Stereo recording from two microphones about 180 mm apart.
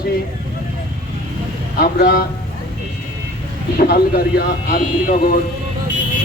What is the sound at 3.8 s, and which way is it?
Speech, 55° left (ahead or behind).